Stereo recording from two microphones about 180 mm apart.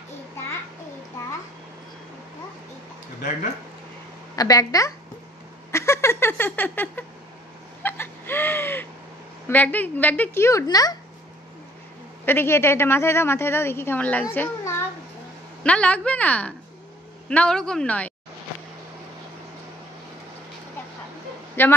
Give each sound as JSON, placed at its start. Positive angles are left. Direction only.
{"t": 4.4, "sound": "a woman's voice", "side_deg": 20}
{"t": 7.8, "sound": "a sound", "side_deg": 10}
{"t": 9.5, "sound": "a woman's voice", "side_deg": 10}
{"t": 12.3, "sound": "a woman's voice", "side_deg": 15}
{"t": 21.6, "sound": "a woman's voice", "side_deg": 10}